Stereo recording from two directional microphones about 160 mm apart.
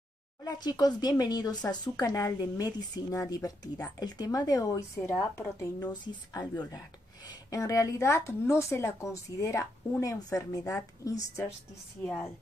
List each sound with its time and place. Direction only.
0.4 s speech: 25° left (ahead or behind)
12.0 s a woman's voice: 10° left (ahead or behind)